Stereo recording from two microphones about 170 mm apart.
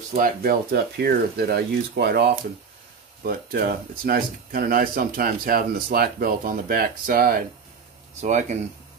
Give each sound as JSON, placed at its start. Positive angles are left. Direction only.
{"t": 0.1, "sound": "speech", "side_deg": -60}
{"t": 3.3, "sound": "speech", "side_deg": -60}
{"t": 8.2, "sound": "speech", "side_deg": -45}